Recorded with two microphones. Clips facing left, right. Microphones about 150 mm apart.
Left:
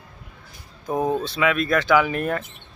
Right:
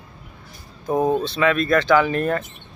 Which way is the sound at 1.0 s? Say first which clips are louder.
Right 3 dB; 25° right (ahead or behind).